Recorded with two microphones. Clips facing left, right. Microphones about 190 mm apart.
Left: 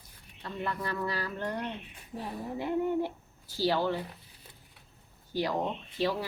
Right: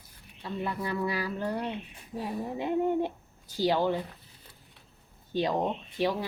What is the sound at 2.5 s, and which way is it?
Speech, 20° right (ahead or behind).